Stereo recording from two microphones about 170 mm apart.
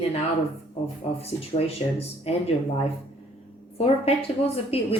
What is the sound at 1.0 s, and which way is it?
A woman's voice, 35° left (ahead or behind).